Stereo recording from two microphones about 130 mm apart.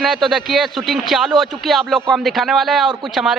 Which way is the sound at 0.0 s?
Centre (ahead or behind).